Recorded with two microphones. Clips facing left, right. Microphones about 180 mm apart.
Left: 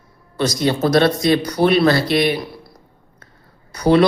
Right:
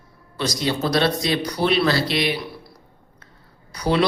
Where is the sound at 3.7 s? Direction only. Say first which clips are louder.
Left 7 dB; 50° left (ahead or behind).